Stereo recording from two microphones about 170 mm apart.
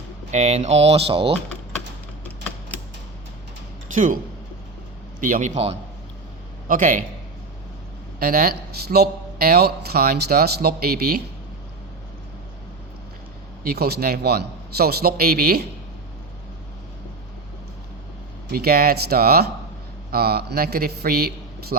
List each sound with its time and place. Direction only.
0.3 s speech: 40° right (ahead or behind)
3.9 s a man's voice: 50° right (ahead or behind)
5.2 s a man's voice: 50° right (ahead or behind)
6.7 s a man's voice: 50° right (ahead or behind)
8.2 s a man's voice: 65° right (ahead or behind)
13.7 s a man's voice: 70° right (ahead or behind)
18.5 s a man's voice: 65° right (ahead or behind)